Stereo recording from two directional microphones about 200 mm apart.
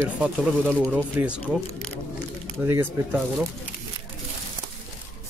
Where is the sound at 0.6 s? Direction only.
5° left (ahead or behind).